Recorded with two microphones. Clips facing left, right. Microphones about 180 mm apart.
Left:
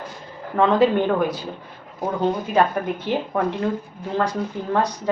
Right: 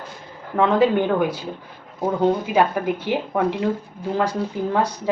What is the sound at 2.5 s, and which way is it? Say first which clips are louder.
A woman's voice: right 1 dB; 5° right (ahead or behind).